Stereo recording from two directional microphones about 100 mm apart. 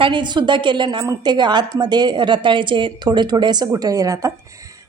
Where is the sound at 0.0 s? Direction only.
50° right (ahead or behind).